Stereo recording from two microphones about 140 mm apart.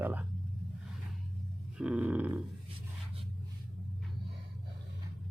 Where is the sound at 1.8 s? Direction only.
5° right (ahead or behind).